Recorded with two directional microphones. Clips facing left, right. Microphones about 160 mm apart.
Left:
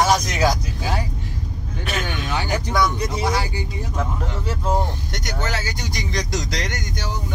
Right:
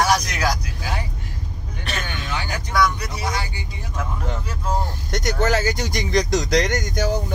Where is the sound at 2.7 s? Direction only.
20° left (ahead or behind).